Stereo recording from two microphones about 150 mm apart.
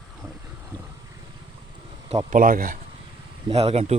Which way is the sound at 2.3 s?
70° right (ahead or behind).